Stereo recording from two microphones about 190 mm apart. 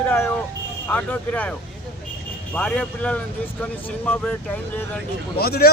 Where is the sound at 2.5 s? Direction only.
5° left (ahead or behind).